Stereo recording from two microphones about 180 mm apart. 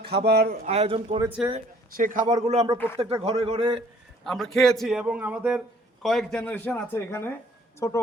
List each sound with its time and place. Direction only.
0.3 s speech: 60° right (ahead or behind)
0.7 s speech: 35° right (ahead or behind)
2.0 s a man's voice: 50° right (ahead or behind)
2.3 s speech: 35° right (ahead or behind)
2.7 s speech: 10° left (ahead or behind)
3.0 s speech: 35° right (ahead or behind)
4.2 s a man's voice: centre (ahead or behind); by 8.0 s 20° left (ahead or behind)